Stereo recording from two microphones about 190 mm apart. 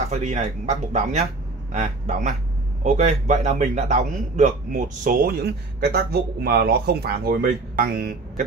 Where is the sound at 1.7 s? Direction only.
40° right (ahead or behind).